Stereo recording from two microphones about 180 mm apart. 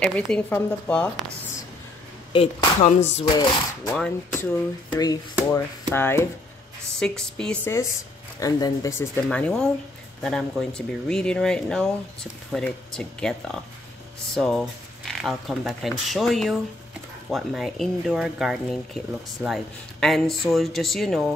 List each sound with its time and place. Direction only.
0.0 s speech: 5° left (ahead or behind)
2.3 s music: 35° left (ahead or behind)
3.3 s speech: 20° left (ahead or behind)
3.9 s speech: 5° left (ahead or behind)
4.9 s speech: 20° left (ahead or behind)
8.4 s speech: 20° left (ahead or behind); by 21.3 s centre (ahead or behind)